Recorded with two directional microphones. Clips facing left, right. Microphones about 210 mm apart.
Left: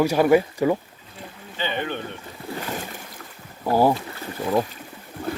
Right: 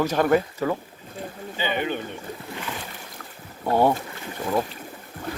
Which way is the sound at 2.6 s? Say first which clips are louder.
Left 3 dB; 45° left (ahead or behind).